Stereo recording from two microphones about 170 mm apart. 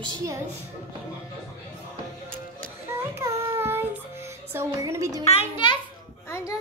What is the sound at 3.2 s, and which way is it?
Child singing, 15° right (ahead or behind).